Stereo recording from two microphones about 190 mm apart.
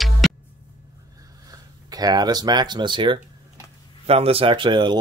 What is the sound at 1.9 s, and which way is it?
Speech, 20° right (ahead or behind).